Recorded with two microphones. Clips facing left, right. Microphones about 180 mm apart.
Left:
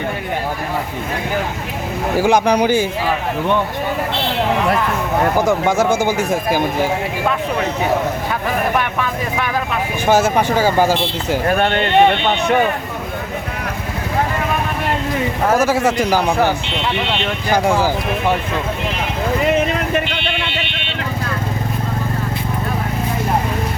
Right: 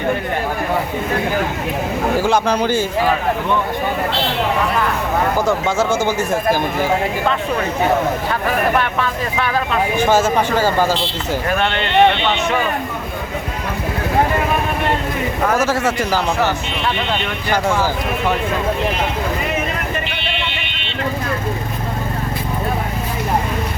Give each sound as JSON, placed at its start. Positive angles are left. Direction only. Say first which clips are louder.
{"t": 2.2, "sound": "a man's voice", "louder": "left 6 dB", "side_deg": 15}
{"t": 5.5, "sound": "a man's voice", "louder": "left 2 dB", "side_deg": 15}
{"t": 8.8, "sound": "a man's voice", "louder": "right 1 dB", "side_deg": 15}
{"t": 11.4, "sound": "speech", "louder": "left 4 dB", "side_deg": 45}
{"t": 15.5, "sound": "a man's voice", "louder": "left 4 dB", "side_deg": 10}